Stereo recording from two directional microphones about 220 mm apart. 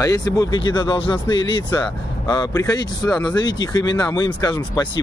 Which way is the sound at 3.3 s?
20° left (ahead or behind).